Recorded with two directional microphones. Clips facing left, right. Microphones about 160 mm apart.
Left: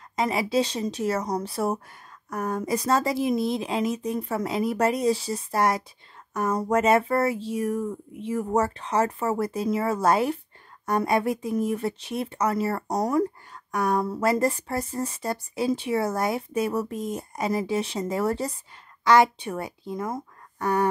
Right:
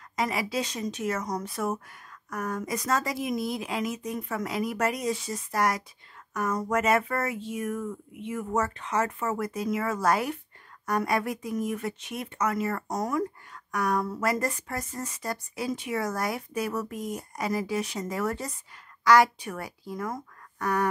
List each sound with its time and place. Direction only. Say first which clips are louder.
0.1 s speech: left 5 dB; 25° left (ahead or behind)